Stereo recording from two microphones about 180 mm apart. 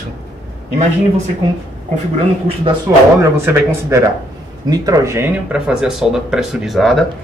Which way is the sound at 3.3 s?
15° right (ahead or behind).